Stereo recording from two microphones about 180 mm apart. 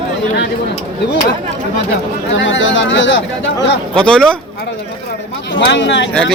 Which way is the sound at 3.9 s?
5° left (ahead or behind).